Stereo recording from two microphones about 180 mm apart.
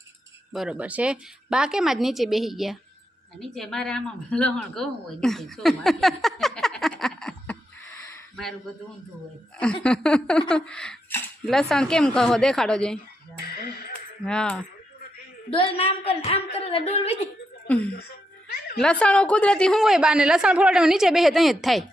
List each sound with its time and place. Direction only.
0.5 s a woman's voice: 5° right (ahead or behind)
9.8 s a woman's voice: 5° left (ahead or behind)
13.4 s speech: 55° left (ahead or behind)
14.3 s a woman's voice: 5° left (ahead or behind)
15.4 s a woman's voice: 30° left (ahead or behind)
17.7 s a woman's voice: 5° left (ahead or behind)